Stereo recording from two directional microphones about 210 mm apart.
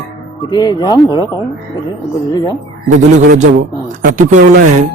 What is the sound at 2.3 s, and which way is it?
Speech, 20° left (ahead or behind).